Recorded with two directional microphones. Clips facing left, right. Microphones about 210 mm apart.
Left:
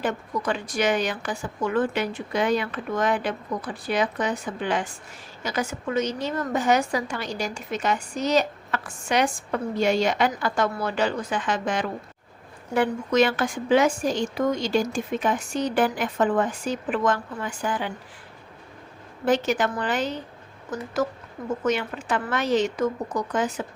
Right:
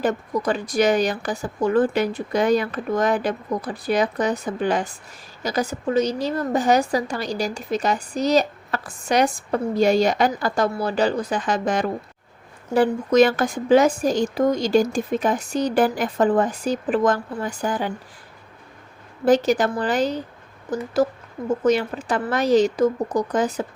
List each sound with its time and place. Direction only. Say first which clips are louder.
0.0 s a woman's voice: right 5 dB; 40° right (ahead or behind)
19.2 s a woman's voice: right 5 dB; 35° right (ahead or behind)